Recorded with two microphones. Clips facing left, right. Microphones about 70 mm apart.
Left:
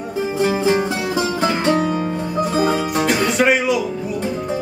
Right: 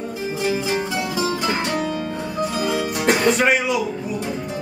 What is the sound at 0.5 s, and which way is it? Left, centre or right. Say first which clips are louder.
Music: left 3 dB; left.